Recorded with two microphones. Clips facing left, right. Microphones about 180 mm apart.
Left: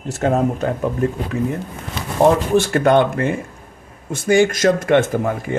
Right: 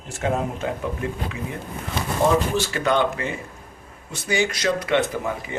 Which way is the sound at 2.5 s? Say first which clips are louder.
Left 8 dB; 55° left (ahead or behind).